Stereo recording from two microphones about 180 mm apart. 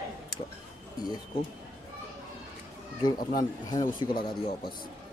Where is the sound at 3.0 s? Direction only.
20° left (ahead or behind).